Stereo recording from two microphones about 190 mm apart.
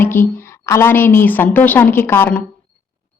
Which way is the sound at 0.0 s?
10° left (ahead or behind).